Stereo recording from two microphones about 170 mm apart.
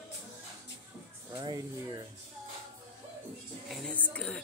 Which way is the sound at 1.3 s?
25° right (ahead or behind).